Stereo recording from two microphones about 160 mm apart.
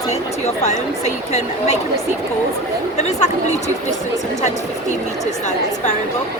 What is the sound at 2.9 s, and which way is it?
Speech, 45° left (ahead or behind).